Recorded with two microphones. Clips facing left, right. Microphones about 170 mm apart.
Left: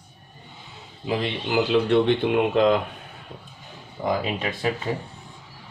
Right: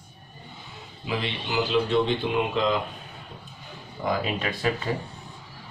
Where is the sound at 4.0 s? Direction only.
25° left (ahead or behind).